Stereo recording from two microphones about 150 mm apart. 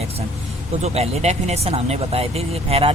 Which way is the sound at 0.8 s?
45° right (ahead or behind).